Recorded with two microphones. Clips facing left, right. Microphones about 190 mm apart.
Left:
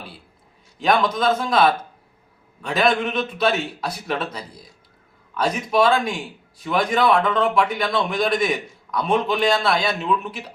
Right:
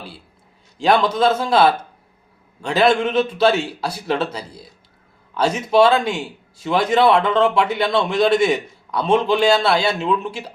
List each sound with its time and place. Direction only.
0.8 s a man's voice: 30° right (ahead or behind)